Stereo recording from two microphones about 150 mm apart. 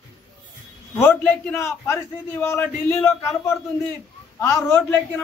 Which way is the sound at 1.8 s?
15° left (ahead or behind).